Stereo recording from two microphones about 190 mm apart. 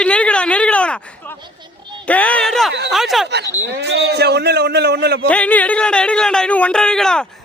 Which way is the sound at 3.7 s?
60° right (ahead or behind).